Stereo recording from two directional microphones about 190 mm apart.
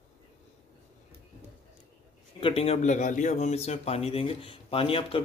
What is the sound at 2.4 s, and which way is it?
Speech, 30° left (ahead or behind).